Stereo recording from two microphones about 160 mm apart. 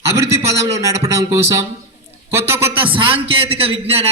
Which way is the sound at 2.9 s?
35° right (ahead or behind).